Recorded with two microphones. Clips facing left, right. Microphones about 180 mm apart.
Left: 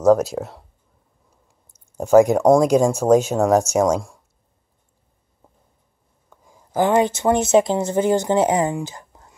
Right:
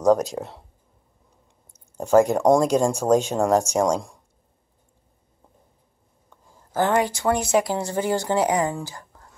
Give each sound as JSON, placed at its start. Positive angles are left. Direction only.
{"t": 0.0, "sound": "speech", "side_deg": 5}
{"t": 2.0, "sound": "speech", "side_deg": 10}
{"t": 6.3, "sound": "speech", "side_deg": 10}
{"t": 8.7, "sound": "a sound", "side_deg": 20}